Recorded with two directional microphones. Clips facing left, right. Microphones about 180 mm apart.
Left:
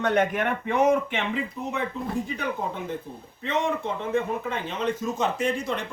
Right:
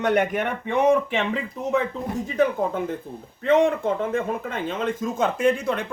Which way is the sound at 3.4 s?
50° right (ahead or behind).